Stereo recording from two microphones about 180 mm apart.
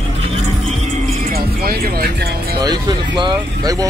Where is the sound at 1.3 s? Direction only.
55° right (ahead or behind).